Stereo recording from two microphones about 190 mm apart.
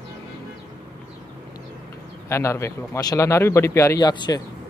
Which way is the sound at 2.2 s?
15° left (ahead or behind).